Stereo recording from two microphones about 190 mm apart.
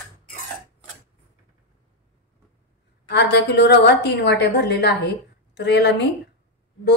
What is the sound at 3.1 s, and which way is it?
A woman's voice, 65° left (ahead or behind).